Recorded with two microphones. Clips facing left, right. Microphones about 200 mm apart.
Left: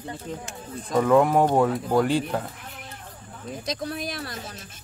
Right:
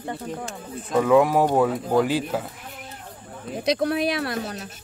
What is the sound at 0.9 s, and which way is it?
Speech, 5° right (ahead or behind).